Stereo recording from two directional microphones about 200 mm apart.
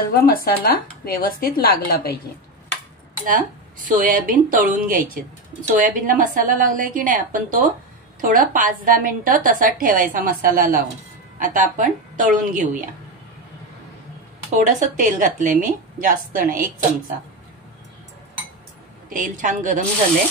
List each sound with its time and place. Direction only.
0.1 s speech: 50° left (ahead or behind)
3.3 s a woman's voice: 40° right (ahead or behind)
14.6 s a woman's voice: 40° right (ahead or behind)
19.0 s a woman's voice: 40° right (ahead or behind)